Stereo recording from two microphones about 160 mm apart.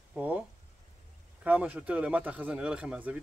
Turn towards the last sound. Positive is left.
turn(degrees=-10)  # may be behind; listen again after turning